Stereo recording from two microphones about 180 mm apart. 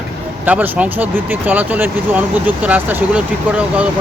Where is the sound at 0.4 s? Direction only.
10° right (ahead or behind).